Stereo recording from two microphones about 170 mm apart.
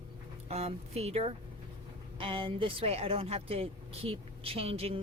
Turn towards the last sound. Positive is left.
turn(degrees=-35)  # may be behind; listen again after turning